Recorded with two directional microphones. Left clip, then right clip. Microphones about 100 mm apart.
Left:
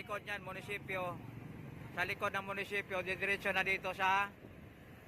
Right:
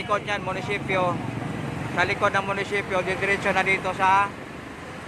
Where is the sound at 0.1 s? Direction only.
30° left (ahead or behind).